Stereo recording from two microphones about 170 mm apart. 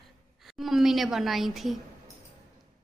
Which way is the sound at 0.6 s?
Centre (ahead or behind).